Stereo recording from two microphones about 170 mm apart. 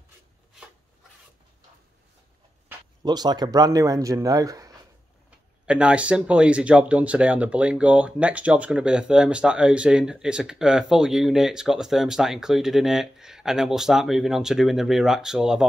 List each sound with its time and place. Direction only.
3.0 s speech: 25° right (ahead or behind)
5.7 s speech: 5° right (ahead or behind)